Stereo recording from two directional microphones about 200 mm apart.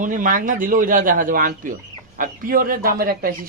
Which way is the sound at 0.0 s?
40° right (ahead or behind).